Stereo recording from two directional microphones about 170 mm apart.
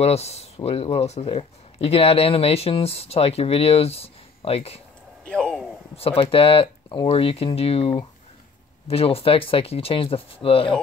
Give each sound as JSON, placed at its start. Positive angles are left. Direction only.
{"t": 0.0, "sound": "speech", "side_deg": 40}
{"t": 5.2, "sound": "a sound", "side_deg": 5}
{"t": 5.9, "sound": "speech", "side_deg": 35}